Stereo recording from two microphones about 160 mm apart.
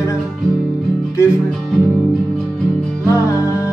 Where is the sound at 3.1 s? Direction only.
20° left (ahead or behind).